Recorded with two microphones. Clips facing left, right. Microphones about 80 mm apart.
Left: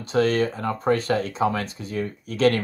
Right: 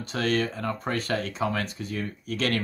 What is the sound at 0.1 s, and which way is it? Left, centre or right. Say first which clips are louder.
Speech: left 6 dB; left.